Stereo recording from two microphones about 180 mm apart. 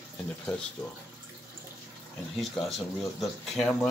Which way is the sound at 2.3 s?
Centre (ahead or behind).